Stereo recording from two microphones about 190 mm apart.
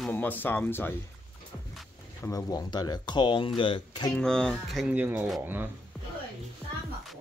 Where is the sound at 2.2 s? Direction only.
20° left (ahead or behind).